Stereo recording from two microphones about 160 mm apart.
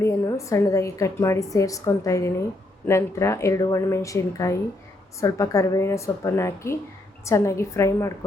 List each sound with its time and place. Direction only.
0.0 s a woman's voice: 20° left (ahead or behind)